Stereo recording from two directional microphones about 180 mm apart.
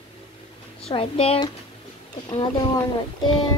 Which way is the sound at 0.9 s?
30° left (ahead or behind).